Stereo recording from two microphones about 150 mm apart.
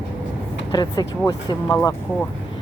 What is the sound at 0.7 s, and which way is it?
Speech, 30° left (ahead or behind).